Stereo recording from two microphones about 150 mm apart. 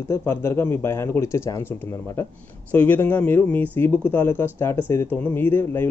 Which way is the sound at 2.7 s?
10° left (ahead or behind).